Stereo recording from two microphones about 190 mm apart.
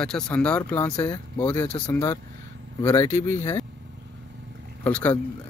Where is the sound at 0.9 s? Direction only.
20° left (ahead or behind).